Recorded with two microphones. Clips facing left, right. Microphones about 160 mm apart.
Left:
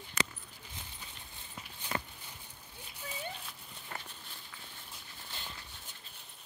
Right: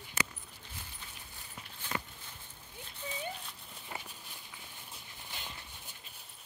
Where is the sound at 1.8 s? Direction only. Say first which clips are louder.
Left 1 dB; 15° left (ahead or behind).